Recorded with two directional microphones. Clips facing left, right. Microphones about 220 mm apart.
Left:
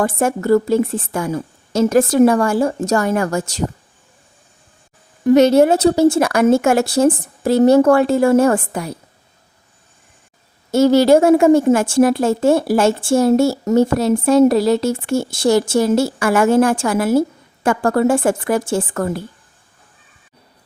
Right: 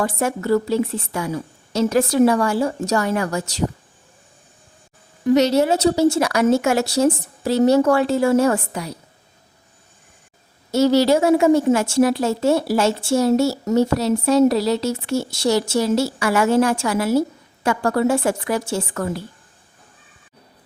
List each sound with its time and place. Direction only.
0.0 s a woman's voice: 50° left (ahead or behind)
5.2 s a woman's voice: 50° left (ahead or behind)
10.7 s a woman's voice: 50° left (ahead or behind)